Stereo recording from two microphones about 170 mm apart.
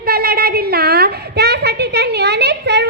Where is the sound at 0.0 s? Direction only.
60° right (ahead or behind).